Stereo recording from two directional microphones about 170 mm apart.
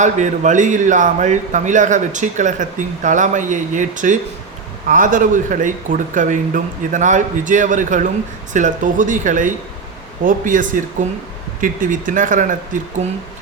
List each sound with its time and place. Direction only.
0.0 s a man's voice: 45° right (ahead or behind)